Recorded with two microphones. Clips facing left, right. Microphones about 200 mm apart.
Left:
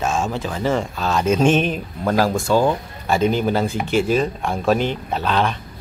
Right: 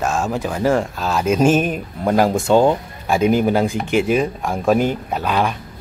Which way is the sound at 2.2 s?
20° right (ahead or behind).